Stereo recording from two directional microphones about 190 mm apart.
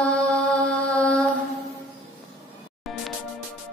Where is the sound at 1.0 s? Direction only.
5° left (ahead or behind).